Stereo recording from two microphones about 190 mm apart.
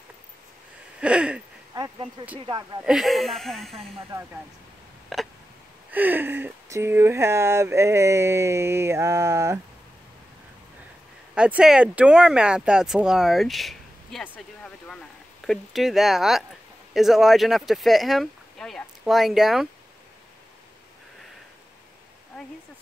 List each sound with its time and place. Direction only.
1.0 s speech: 5° right (ahead or behind)
1.7 s speech: 20° right (ahead or behind)
2.8 s speech: centre (ahead or behind)
5.1 s a sound: centre (ahead or behind)
5.9 s speech: 10° right (ahead or behind)
11.3 s speech: 5° right (ahead or behind)